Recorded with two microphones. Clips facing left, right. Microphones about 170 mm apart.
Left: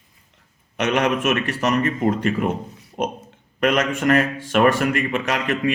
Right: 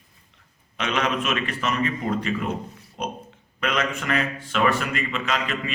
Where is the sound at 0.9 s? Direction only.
50° left (ahead or behind).